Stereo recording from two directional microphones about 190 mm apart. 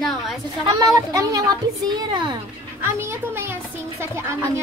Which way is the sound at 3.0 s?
15° right (ahead or behind).